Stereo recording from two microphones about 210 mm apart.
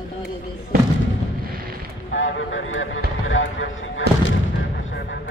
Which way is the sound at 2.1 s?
65° left (ahead or behind).